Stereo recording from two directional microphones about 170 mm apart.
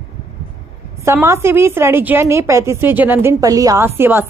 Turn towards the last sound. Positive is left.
turn(degrees=-15)  # may be behind; listen again after turning